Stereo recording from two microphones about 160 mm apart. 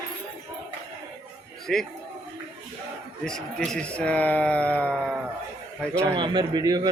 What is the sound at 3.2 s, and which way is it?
Speech, 5° left (ahead or behind).